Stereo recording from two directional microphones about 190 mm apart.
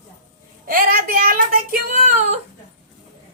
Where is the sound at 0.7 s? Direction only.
50° right (ahead or behind).